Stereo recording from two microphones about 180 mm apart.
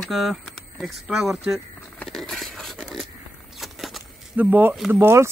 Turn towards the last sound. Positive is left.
turn(degrees=-15)  # may be behind; listen again after turning